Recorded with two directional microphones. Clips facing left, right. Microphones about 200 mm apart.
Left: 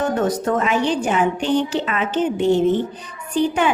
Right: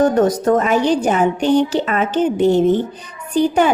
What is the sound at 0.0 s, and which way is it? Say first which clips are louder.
A woman's voice: right 6 dB; 40° right (ahead or behind).